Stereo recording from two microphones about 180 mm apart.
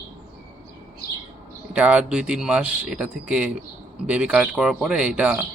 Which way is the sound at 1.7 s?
5° right (ahead or behind).